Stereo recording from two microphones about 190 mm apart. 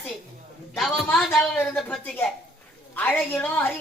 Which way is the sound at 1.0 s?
5° left (ahead or behind).